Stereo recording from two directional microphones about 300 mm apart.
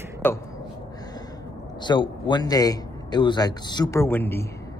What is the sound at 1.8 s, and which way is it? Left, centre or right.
A man's voice, centre.